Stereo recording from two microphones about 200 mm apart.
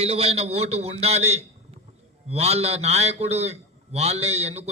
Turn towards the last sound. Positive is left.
turn(degrees=-30)  # may be behind; listen again after turning